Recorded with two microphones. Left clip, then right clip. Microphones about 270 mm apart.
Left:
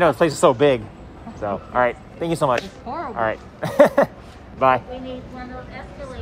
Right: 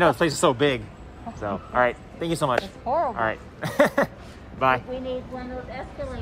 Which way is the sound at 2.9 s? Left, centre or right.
Centre.